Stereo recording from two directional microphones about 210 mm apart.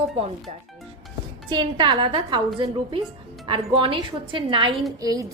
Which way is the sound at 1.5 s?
20° right (ahead or behind).